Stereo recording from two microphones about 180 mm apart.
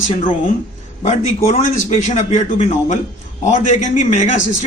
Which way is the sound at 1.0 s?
40° left (ahead or behind).